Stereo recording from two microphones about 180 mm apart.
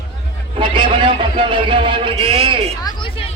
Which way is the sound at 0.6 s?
30° right (ahead or behind).